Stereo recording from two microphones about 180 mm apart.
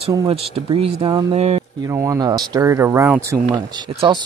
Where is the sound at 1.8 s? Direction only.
15° right (ahead or behind).